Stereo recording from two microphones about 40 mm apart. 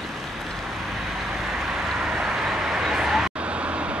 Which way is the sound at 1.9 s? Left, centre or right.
Centre.